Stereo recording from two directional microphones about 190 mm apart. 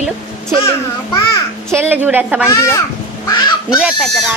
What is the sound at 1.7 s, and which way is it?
Speech, 10° right (ahead or behind).